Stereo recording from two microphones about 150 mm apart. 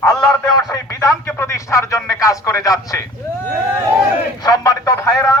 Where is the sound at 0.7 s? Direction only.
20° left (ahead or behind).